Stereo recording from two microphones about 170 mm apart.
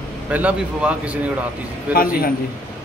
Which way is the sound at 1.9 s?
60° left (ahead or behind).